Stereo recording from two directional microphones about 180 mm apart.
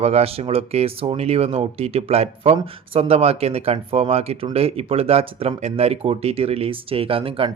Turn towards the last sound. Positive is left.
turn(degrees=-30)  # may be behind; listen again after turning